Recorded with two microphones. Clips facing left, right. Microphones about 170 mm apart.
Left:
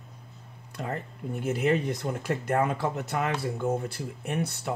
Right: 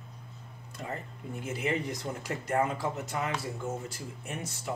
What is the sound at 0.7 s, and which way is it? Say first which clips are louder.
Speech: left 5 dB; 65° left (ahead or behind).